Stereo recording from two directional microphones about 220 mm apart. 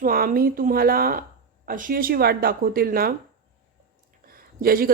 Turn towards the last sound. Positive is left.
turn(degrees=-40)  # may be behind; listen again after turning